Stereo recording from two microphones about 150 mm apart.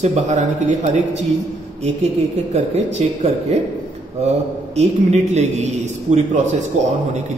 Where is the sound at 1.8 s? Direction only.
45° right (ahead or behind).